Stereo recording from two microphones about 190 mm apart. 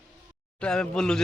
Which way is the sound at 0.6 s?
5° left (ahead or behind).